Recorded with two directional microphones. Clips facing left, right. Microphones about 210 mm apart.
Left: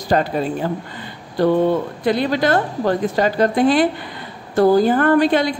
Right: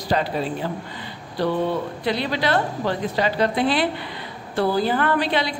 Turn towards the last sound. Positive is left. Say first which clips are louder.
# left 7 dB
turn(degrees=45)  # may be behind; listen again after turning